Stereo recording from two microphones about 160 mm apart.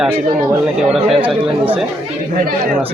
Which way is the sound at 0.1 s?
20° right (ahead or behind).